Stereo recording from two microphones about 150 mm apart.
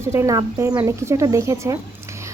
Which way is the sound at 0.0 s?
20° right (ahead or behind).